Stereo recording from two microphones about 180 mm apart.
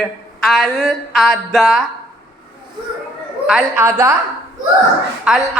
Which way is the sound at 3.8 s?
15° right (ahead or behind).